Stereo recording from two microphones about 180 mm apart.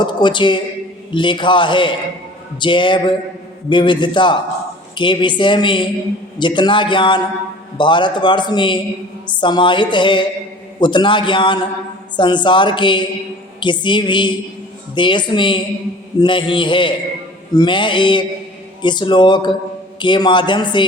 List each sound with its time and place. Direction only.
0.0 s a man's voice: 25° left (ahead or behind)